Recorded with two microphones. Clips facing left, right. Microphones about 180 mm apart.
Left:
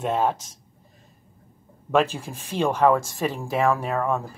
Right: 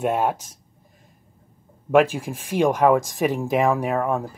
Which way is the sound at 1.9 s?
10° right (ahead or behind).